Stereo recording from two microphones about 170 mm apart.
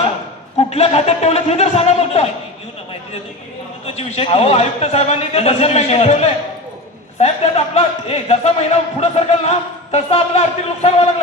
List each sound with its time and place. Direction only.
0.7 s speech: 35° left (ahead or behind)
3.8 s speech: 35° left (ahead or behind)